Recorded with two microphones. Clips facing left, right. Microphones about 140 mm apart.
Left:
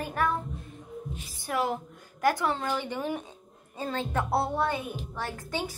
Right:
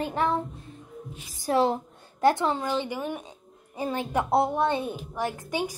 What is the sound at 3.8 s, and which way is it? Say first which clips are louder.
A woman's voice: right 3 dB; 15° right (ahead or behind).